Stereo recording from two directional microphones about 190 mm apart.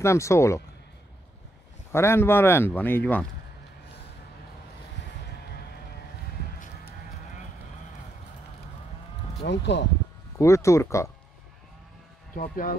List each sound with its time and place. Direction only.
0.0 s speech: 15° left (ahead or behind)
1.9 s speech: 15° left (ahead or behind)
9.4 s speech: 65° left (ahead or behind)
10.3 s speech: 15° left (ahead or behind)
12.4 s speech: 45° left (ahead or behind)